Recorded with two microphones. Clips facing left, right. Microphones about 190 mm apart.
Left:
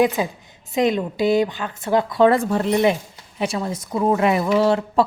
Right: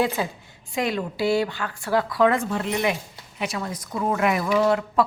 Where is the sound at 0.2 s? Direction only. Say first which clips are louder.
Left 4 dB; 15° left (ahead or behind).